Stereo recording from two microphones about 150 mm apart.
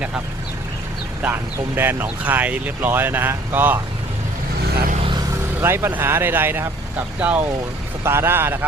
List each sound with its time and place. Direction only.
1.2 s speech: 15° right (ahead or behind)
5.5 s speech: 15° right (ahead or behind)